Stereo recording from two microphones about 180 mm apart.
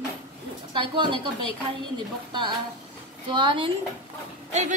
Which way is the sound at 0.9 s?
25° right (ahead or behind).